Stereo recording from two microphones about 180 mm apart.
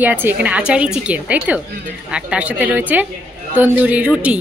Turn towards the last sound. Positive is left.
turn(degrees=-5)  # may be behind; listen again after turning